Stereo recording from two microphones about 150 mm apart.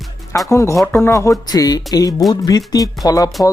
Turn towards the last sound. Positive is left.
turn(degrees=25)  # may be behind; listen again after turning